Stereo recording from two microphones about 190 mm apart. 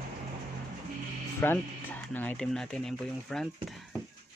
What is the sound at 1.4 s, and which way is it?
Speech, 10° left (ahead or behind).